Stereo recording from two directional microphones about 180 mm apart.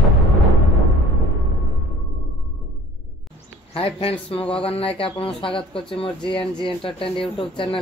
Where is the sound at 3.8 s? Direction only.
30° left (ahead or behind).